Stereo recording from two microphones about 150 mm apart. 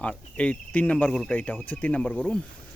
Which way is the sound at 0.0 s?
10° left (ahead or behind).